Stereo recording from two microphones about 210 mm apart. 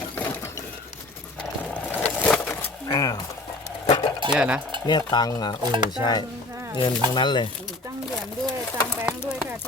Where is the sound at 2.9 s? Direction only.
20° left (ahead or behind).